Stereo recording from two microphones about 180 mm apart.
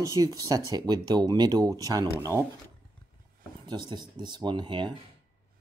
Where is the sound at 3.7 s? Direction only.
25° right (ahead or behind).